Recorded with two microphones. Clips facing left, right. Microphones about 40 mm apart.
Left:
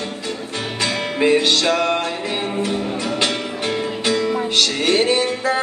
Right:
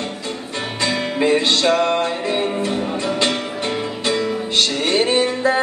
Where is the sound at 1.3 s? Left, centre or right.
Right.